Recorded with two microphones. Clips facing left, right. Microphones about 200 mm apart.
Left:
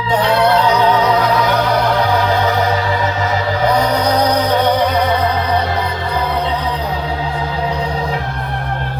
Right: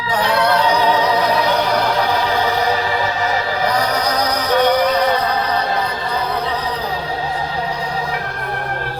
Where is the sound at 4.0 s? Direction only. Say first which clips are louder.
Left 5 dB; 30° left (ahead or behind).